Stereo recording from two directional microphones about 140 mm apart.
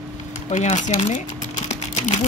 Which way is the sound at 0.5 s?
60° left (ahead or behind).